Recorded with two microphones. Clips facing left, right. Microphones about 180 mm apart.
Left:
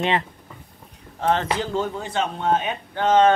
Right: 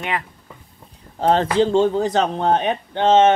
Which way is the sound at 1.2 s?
35° right (ahead or behind).